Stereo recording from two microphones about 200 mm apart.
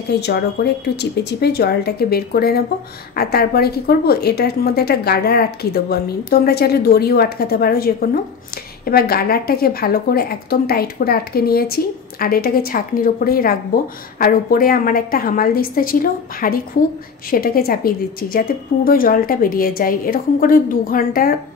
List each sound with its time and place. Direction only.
0.1 s a woman's voice: 55° left (ahead or behind)